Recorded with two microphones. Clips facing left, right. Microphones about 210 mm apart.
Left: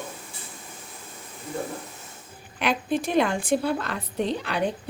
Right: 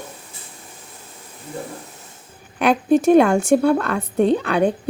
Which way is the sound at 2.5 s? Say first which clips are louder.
Right 9 dB; 45° right (ahead or behind).